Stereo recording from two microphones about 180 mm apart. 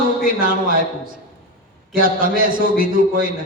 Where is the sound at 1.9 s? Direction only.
50° right (ahead or behind).